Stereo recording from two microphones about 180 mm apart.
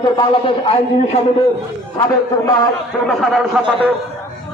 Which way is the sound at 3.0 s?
Centre (ahead or behind).